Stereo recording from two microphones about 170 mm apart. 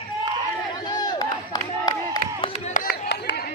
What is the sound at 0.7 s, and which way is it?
Crowd, 25° left (ahead or behind).